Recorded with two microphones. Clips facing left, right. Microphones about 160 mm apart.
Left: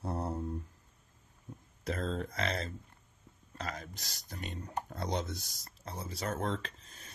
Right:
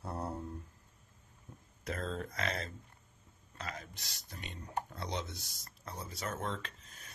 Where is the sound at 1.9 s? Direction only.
30° left (ahead or behind).